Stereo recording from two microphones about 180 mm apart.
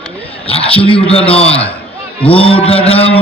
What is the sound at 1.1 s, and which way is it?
Mantra, 30° left (ahead or behind).